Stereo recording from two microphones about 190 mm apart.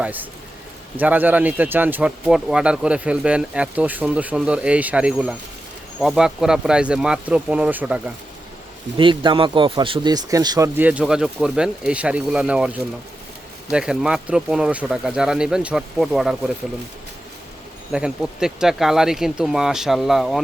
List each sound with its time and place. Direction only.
0.0 s speech: 10° right (ahead or behind)
9.0 s speech: 25° right (ahead or behind)
10.8 s speech: 10° right (ahead or behind)
17.9 s speech: 5° right (ahead or behind)